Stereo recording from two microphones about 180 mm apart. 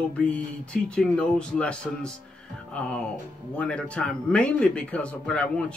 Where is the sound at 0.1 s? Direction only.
5° left (ahead or behind).